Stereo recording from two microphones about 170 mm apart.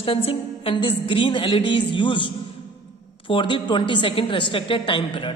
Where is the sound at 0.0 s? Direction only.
35° left (ahead or behind).